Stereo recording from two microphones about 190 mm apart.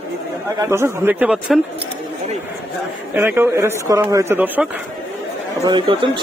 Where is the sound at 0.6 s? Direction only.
15° right (ahead or behind).